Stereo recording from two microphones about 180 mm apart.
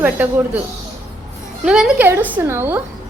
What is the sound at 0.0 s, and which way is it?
Speech, 10° right (ahead or behind).